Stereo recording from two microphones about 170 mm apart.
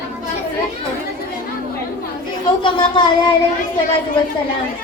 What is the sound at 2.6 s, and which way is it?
Speech, 30° left (ahead or behind).